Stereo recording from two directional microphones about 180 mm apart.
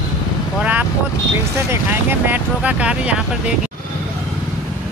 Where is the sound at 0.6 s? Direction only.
10° right (ahead or behind).